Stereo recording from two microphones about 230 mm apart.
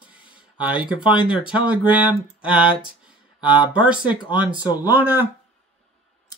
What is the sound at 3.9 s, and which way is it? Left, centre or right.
Speech, centre.